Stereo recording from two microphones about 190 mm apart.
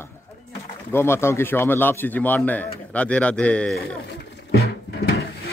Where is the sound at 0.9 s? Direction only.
15° left (ahead or behind).